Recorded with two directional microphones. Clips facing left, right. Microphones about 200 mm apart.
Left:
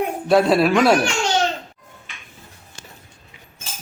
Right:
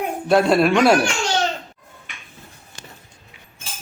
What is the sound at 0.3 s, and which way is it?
Speech, centre (ahead or behind).